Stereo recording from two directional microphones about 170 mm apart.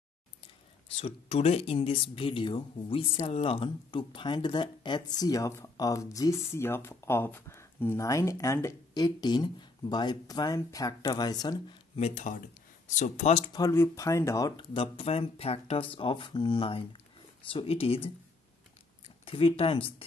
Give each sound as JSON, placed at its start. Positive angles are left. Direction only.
{"t": 0.8, "sound": "speech", "side_deg": 35}
{"t": 11.9, "sound": "speech", "side_deg": 40}
{"t": 13.6, "sound": "speech", "side_deg": 20}
{"t": 19.2, "sound": "speech", "side_deg": 35}